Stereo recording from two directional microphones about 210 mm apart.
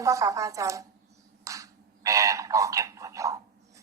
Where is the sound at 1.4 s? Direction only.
15° right (ahead or behind).